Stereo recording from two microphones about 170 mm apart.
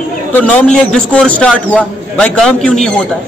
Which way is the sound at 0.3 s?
10° left (ahead or behind).